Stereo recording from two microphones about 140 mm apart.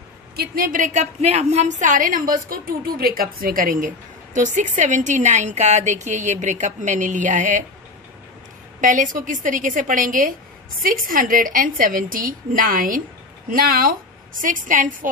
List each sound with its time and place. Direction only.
0.6 s a woman's voice: 75° right (ahead or behind)
8.8 s a woman's voice: 70° right (ahead or behind)
10.8 s a woman's voice: 85° right
14.4 s a woman's voice: 70° right (ahead or behind)